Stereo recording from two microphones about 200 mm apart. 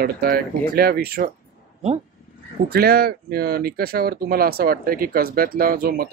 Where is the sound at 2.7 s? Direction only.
50° right (ahead or behind).